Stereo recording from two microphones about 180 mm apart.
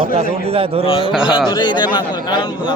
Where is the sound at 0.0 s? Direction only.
35° right (ahead or behind).